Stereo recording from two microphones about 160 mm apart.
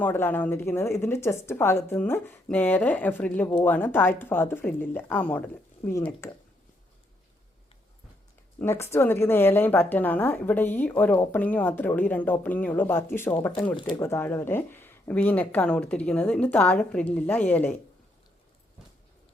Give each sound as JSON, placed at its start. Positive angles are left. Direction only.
{"t": 0.0, "sound": "a woman's voice", "side_deg": 10}
{"t": 8.5, "sound": "a woman's voice", "side_deg": 15}